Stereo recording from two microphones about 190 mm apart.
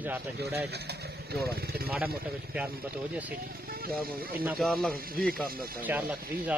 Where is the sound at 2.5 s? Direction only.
10° right (ahead or behind).